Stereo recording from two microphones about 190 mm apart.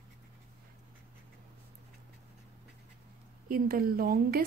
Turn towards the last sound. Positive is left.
turn(degrees=-50)  # may be behind; listen again after turning